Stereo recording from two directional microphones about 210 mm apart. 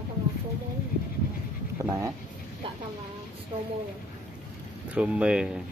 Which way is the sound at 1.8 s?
15° right (ahead or behind).